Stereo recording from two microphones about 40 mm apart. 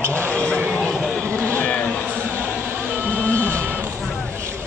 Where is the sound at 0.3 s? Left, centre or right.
Left.